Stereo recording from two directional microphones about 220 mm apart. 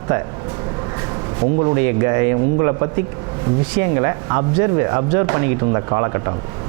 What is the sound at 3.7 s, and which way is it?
Speech, 20° right (ahead or behind).